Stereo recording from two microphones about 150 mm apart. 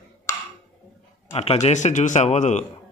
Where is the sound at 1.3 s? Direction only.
40° left (ahead or behind).